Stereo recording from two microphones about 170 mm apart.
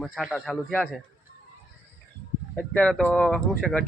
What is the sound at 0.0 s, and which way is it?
Speech, centre (ahead or behind).